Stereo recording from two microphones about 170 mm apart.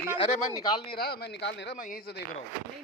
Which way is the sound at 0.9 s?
70° left (ahead or behind).